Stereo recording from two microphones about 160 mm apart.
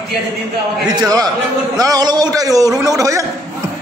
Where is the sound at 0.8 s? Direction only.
25° right (ahead or behind).